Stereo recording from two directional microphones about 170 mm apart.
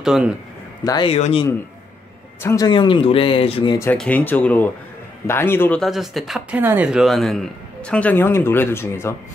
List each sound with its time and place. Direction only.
0.0 s a man's voice: centre (ahead or behind)
0.8 s a man's voice: 25° left (ahead or behind)
2.4 s speech: 20° left (ahead or behind)
3.9 s a man's voice: 10° left (ahead or behind)
5.8 s a man's voice: centre (ahead or behind)